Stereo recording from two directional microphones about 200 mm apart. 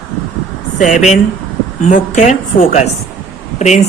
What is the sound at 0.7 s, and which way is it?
A woman's voice, 40° left (ahead or behind).